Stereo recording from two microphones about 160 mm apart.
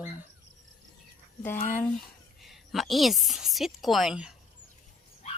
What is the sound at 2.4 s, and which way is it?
A woman's voice, centre (ahead or behind).